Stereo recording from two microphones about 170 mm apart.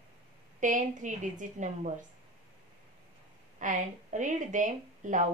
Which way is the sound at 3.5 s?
45° right (ahead or behind).